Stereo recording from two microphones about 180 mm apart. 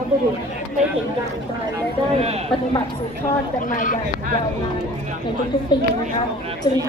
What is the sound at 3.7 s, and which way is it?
Speech, 50° left (ahead or behind).